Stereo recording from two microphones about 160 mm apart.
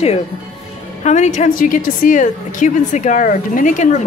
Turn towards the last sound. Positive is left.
turn(degrees=50)  # may be behind; listen again after turning